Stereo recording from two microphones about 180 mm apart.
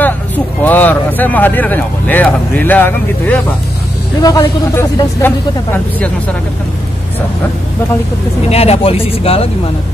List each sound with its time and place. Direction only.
0.7 s speech: 10° left (ahead or behind)
8.5 s speech: 35° left (ahead or behind)